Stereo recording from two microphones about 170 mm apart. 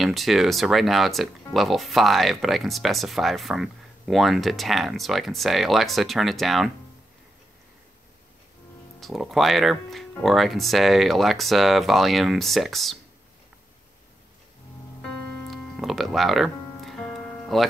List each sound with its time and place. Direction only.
0.0 s speech: centre (ahead or behind)
9.0 s speech: centre (ahead or behind)
15.0 s music: 5° left (ahead or behind)